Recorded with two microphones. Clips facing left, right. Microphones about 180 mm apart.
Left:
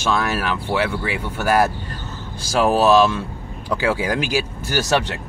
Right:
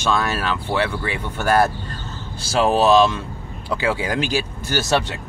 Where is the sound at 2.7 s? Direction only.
5° left (ahead or behind).